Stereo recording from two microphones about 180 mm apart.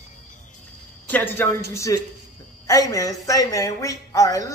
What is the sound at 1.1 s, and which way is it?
Speech, 10° left (ahead or behind).